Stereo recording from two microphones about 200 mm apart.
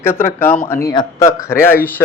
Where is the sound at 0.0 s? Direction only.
10° left (ahead or behind).